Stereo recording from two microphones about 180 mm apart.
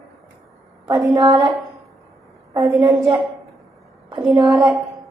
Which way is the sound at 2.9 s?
20° right (ahead or behind).